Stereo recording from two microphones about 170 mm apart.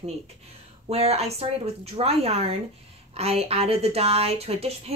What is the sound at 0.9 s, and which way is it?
A woman's voice, 35° right (ahead or behind).